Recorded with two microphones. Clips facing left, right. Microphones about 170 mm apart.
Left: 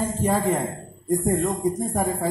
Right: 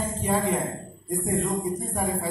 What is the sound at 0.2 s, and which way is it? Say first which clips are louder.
A man's voice: left 2 dB; 40° left (ahead or behind).